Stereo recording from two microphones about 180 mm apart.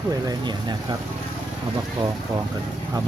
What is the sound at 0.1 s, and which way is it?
Speech, 20° right (ahead or behind).